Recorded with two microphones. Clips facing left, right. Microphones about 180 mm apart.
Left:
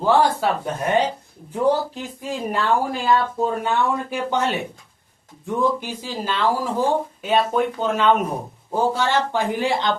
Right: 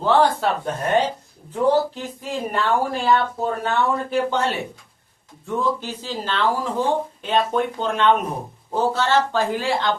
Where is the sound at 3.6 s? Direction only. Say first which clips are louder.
Even; 15° left (ahead or behind).